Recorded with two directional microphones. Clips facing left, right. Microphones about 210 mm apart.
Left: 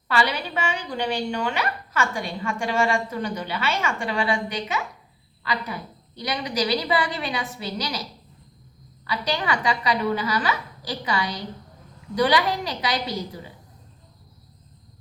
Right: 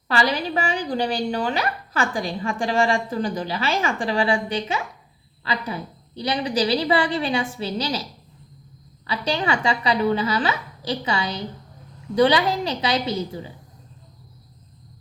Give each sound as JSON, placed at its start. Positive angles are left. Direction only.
{"t": 0.1, "sound": "a woman's voice", "side_deg": -35}
{"t": 6.1, "sound": "a woman's voice", "side_deg": -30}
{"t": 9.0, "sound": "a woman's voice", "side_deg": -25}